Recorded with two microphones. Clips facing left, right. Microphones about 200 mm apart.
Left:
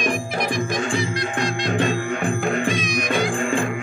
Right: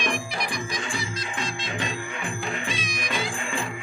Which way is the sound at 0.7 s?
55° left (ahead or behind).